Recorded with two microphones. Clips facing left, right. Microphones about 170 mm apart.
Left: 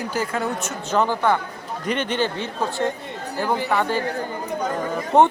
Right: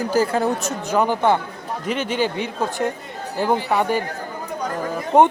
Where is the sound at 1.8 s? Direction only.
5° right (ahead or behind).